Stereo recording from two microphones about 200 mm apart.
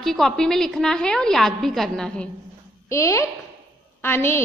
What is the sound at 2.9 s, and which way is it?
A woman's voice, 15° left (ahead or behind).